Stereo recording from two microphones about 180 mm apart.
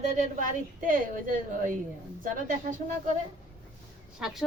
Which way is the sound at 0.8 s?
50° right (ahead or behind).